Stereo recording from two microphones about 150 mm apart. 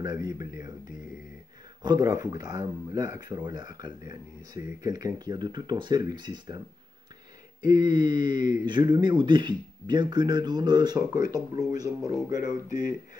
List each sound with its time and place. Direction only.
0.0 s speech: 25° right (ahead or behind)
1.8 s speech: 25° right (ahead or behind)
7.6 s speech: 30° right (ahead or behind)